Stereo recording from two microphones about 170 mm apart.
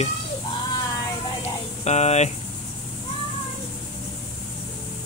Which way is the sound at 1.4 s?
40° left (ahead or behind).